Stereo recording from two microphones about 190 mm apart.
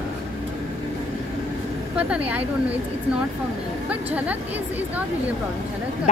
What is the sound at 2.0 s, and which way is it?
Speech, 10° right (ahead or behind).